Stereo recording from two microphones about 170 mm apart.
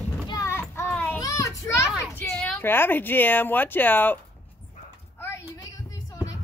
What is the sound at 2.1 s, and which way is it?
A woman's voice, 10° left (ahead or behind).